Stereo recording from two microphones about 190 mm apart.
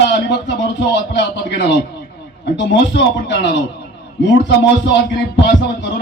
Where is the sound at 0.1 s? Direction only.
65° left (ahead or behind).